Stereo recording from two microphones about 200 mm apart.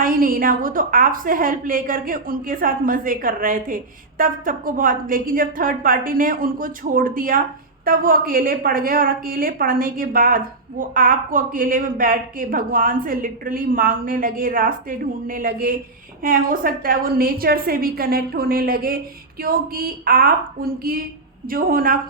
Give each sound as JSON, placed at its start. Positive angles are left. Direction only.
{"t": 0.0, "sound": "a woman's voice", "side_deg": -45}